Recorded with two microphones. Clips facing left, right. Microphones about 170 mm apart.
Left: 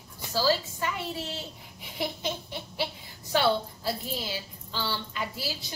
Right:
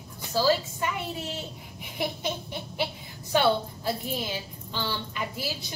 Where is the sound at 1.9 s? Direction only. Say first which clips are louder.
Right 1 dB; 20° right (ahead or behind).